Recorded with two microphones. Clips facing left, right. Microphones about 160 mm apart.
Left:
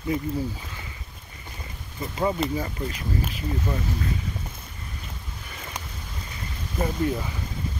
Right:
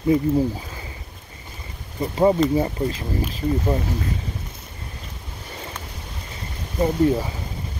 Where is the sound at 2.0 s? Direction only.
35° right (ahead or behind).